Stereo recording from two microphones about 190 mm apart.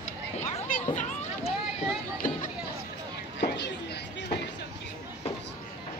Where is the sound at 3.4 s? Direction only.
60° left (ahead or behind).